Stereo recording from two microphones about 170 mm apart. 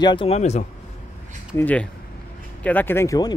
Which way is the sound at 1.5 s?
10° left (ahead or behind).